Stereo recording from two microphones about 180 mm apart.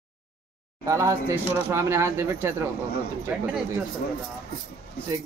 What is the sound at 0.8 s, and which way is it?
Speech, 15° right (ahead or behind).